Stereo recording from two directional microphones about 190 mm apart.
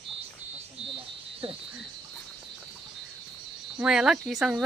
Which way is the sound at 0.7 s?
30° right (ahead or behind).